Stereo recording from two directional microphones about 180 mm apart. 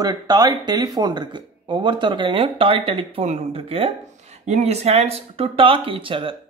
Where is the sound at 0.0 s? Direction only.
20° right (ahead or behind).